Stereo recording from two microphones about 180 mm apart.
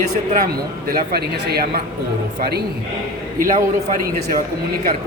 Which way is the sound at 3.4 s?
50° right (ahead or behind).